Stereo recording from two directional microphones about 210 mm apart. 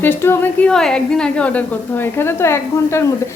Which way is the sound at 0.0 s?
10° left (ahead or behind).